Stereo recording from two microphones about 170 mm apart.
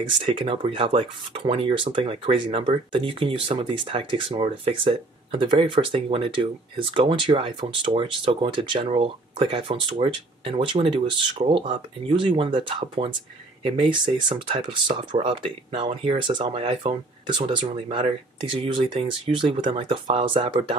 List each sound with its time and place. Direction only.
0.2 s speech: 30° right (ahead or behind)